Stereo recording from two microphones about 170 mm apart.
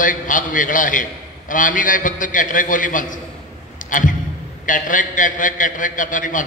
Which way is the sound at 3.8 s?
50° left (ahead or behind).